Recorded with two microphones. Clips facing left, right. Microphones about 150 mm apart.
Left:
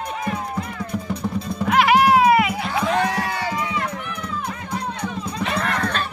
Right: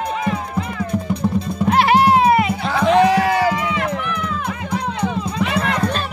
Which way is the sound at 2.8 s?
90° right.